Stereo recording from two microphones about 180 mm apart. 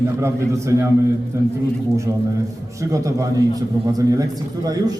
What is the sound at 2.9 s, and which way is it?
A man's voice, 15° right (ahead or behind).